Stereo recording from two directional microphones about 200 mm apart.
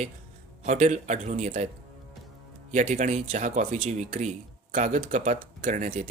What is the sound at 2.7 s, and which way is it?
Speech, 35° right (ahead or behind).